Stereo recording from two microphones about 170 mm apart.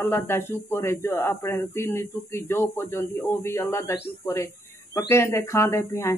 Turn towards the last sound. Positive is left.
turn(degrees=15)  # may be behind; listen again after turning